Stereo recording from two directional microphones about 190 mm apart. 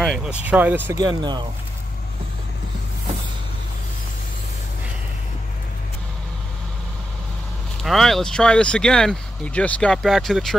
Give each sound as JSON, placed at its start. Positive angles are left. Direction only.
{"t": 0.0, "sound": "speech", "side_deg": 0}
{"t": 7.8, "sound": "speech", "side_deg": 0}